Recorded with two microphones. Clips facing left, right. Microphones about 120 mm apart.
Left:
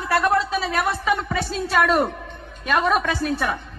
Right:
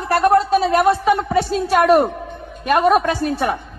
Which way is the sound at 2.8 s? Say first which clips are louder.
Right 6 dB; 50° right (ahead or behind).